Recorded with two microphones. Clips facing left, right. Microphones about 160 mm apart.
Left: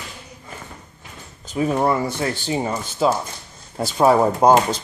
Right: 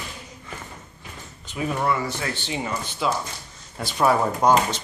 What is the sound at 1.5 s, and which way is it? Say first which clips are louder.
Speech: left 5 dB; 35° left (ahead or behind).